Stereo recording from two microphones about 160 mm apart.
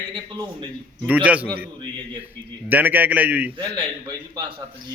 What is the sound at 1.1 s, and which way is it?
Speech, 10° right (ahead or behind).